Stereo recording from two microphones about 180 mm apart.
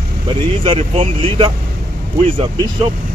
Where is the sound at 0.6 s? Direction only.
35° right (ahead or behind).